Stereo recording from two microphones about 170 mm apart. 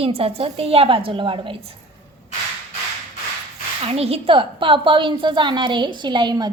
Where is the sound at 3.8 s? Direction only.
35° right (ahead or behind).